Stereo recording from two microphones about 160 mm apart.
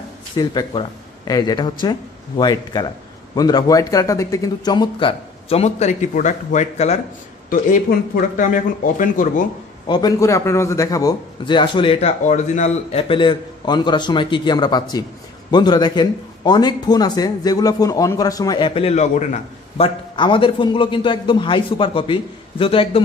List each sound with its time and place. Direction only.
0.4 s speech: 25° left (ahead or behind); by 7.0 s 45° left (ahead or behind)
7.4 s speech: 55° left (ahead or behind)
9.8 s speech: 25° left (ahead or behind)
12.3 s speech: 45° left (ahead or behind); by 18.7 s 25° left (ahead or behind)
18.7 s a man's voice: 40° left (ahead or behind)
20.2 s a man's voice: 30° left (ahead or behind)